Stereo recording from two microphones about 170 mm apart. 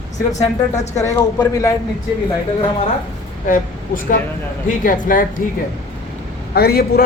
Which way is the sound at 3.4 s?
55° left (ahead or behind).